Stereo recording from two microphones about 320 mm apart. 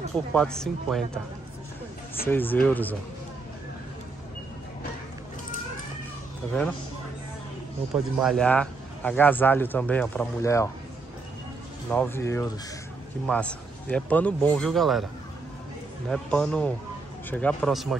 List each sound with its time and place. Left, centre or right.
0.3 s speech: centre
2.2 s speech: centre
7.9 s speech: centre
11.9 s speech: centre
16.1 s speech: centre